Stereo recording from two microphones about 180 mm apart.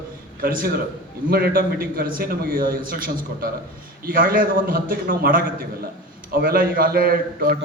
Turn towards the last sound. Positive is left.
turn(degrees=-55)  # may be behind; listen again after turning